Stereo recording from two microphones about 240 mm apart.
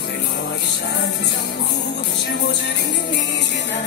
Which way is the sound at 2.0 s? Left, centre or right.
Left.